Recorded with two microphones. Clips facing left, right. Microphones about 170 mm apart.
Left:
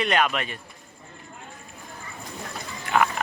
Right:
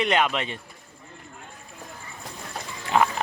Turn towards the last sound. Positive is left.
turn(degrees=-30)  # may be behind; listen again after turning